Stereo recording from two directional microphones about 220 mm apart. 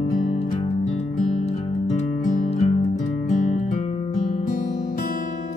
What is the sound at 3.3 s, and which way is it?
Guitar, 30° left (ahead or behind).